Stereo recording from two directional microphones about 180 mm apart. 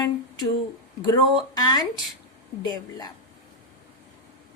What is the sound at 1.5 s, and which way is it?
Speech, 20° left (ahead or behind).